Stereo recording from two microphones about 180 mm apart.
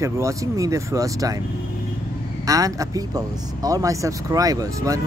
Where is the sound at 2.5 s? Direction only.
20° right (ahead or behind).